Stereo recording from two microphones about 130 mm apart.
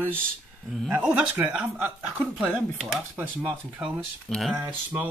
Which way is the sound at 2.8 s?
Centre (ahead or behind).